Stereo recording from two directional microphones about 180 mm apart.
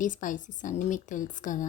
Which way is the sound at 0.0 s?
45° left (ahead or behind).